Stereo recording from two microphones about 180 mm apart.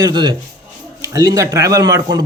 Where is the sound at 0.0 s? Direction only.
25° right (ahead or behind).